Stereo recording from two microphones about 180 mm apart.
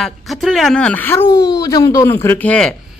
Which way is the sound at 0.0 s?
Centre (ahead or behind).